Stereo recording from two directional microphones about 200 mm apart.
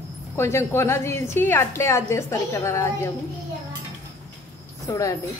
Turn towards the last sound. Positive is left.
turn(degrees=15)  # may be behind; listen again after turning